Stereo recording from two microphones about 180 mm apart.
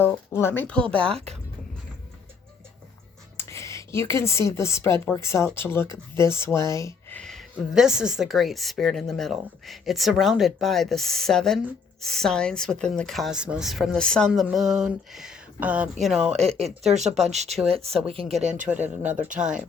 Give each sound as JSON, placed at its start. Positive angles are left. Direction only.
{"t": 0.0, "sound": "speech", "side_deg": 10}
{"t": 1.1, "sound": "speech", "side_deg": -35}
{"t": 3.3, "sound": "speech", "side_deg": 15}
{"t": 7.2, "sound": "a woman's voice", "side_deg": 0}
{"t": 16.4, "sound": "speech", "side_deg": -35}
{"t": 18.4, "sound": "speech", "side_deg": -45}
{"t": 18.7, "sound": "a woman's voice", "side_deg": -10}